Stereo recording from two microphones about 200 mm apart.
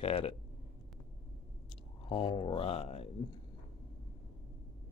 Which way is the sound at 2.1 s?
25° left (ahead or behind).